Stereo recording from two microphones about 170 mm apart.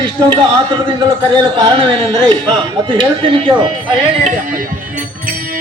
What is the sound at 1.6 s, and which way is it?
Speech, 30° right (ahead or behind).